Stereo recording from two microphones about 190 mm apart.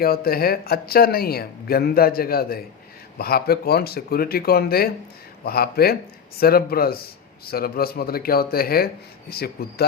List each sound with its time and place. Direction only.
0.0 s speech: 50° left (ahead or behind)